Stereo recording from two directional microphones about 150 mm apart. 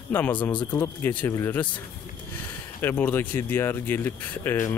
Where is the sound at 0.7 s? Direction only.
15° left (ahead or behind).